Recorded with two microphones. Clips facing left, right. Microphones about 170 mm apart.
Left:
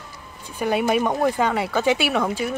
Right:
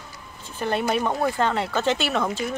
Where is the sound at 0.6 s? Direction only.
10° left (ahead or behind).